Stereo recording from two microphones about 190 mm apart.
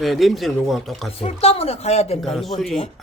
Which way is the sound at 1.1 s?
30° left (ahead or behind).